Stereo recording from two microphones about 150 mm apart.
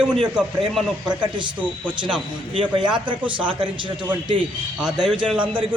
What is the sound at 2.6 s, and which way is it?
Speech, 30° right (ahead or behind).